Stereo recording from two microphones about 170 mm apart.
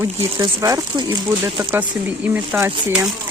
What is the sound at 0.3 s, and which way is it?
Speech, 20° right (ahead or behind).